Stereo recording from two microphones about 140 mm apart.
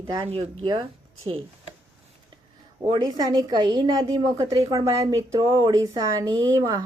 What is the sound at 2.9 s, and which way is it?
A woman's voice, 30° right (ahead or behind).